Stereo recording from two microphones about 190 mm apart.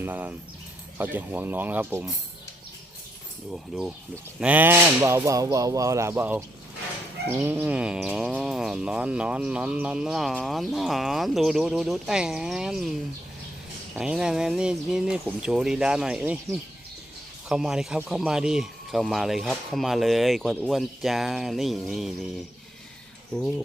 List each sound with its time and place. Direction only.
0.0 s speech: 10° right (ahead or behind)
3.5 s speech: 5° right (ahead or behind)
13.9 s speech: 5° right (ahead or behind)
23.3 s speech: 5° left (ahead or behind)